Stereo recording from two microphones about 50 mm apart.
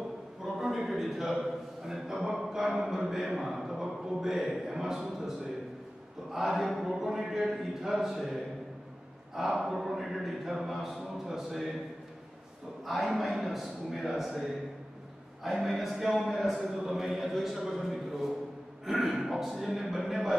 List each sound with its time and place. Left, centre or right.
0.4 s a sound: centre
6.3 s a sound: centre
8.0 s speech: centre
12.9 s speech: centre
15.8 s speech: centre
16.5 s speech: centre
16.8 s speech: centre